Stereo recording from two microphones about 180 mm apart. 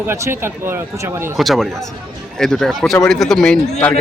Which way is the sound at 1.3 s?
Centre (ahead or behind).